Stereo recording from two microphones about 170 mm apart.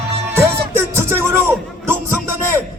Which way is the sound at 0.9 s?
15° right (ahead or behind).